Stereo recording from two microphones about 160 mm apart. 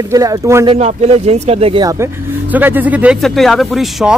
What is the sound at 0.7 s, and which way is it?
Speech, 45° right (ahead or behind).